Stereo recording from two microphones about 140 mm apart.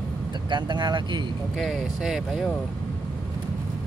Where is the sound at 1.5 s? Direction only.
Centre (ahead or behind).